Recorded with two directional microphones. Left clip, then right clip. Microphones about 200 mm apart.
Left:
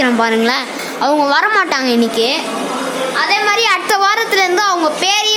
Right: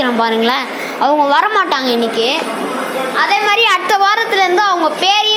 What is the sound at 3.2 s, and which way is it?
Children playing, 5° right (ahead or behind).